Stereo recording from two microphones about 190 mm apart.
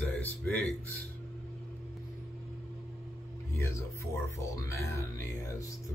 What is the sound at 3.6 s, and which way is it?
Speech, 15° left (ahead or behind).